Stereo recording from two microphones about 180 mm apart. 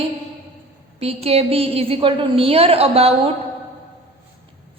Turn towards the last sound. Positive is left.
turn(degrees=-30)  # may be behind; listen again after turning